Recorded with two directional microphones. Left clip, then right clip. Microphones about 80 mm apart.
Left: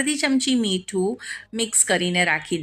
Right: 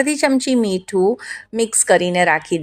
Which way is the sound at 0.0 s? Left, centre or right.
Right.